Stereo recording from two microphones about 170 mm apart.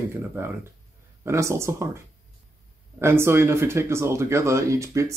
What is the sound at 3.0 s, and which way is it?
Speech, 15° right (ahead or behind).